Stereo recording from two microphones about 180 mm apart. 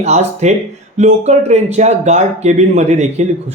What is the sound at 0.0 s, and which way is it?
Speech, 40° right (ahead or behind).